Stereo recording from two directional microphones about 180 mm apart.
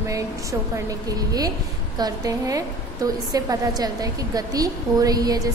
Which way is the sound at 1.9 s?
20° right (ahead or behind).